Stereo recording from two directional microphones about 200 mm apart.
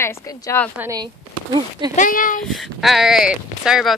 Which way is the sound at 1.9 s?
40° left (ahead or behind).